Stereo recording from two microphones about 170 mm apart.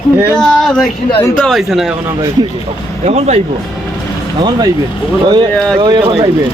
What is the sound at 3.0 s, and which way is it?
Speech, 40° right (ahead or behind).